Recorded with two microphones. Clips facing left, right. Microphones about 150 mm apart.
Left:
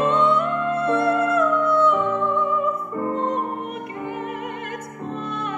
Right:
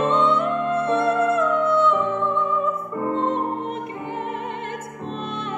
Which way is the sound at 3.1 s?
25° right (ahead or behind).